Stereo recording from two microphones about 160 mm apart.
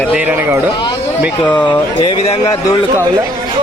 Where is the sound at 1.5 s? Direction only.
10° left (ahead or behind).